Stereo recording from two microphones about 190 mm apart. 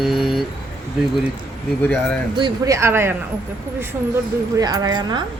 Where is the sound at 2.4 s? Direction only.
15° right (ahead or behind).